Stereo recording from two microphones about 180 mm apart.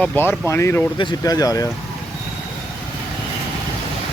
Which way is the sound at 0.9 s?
25° left (ahead or behind).